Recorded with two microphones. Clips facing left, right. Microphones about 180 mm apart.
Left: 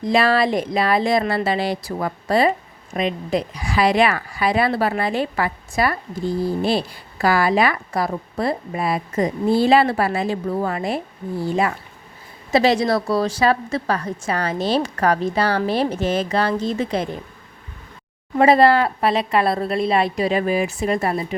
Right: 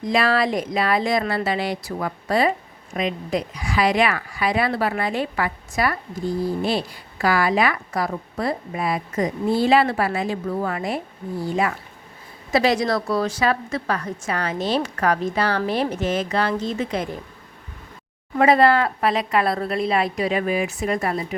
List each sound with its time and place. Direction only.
0.0 s a woman's voice: 30° left (ahead or behind)
12.5 s a woman's voice: 30° left (ahead or behind)
18.3 s speech: 30° left (ahead or behind)